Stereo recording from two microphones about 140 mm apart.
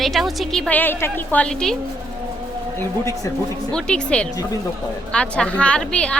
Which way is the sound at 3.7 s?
5° left (ahead or behind).